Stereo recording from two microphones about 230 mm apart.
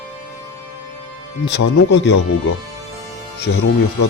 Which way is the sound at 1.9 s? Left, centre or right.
Left.